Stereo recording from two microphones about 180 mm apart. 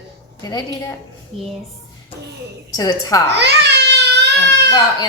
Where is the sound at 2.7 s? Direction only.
20° left (ahead or behind).